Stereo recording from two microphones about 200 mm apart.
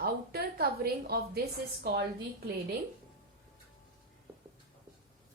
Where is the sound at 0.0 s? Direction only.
50° right (ahead or behind).